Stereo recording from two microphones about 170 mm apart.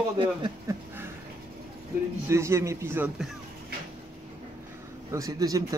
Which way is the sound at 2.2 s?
15° right (ahead or behind).